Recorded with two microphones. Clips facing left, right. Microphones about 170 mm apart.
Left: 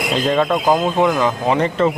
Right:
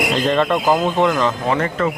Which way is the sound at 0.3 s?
5° left (ahead or behind).